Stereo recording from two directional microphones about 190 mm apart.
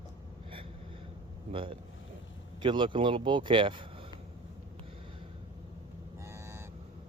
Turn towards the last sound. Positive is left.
turn(degrees=-15)  # may be behind; listen again after turning